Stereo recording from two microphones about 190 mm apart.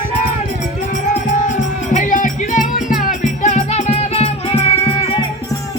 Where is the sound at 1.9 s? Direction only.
45° left (ahead or behind).